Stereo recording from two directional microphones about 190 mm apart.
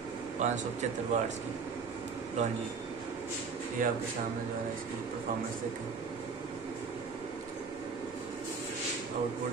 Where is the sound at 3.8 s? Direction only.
45° right (ahead or behind).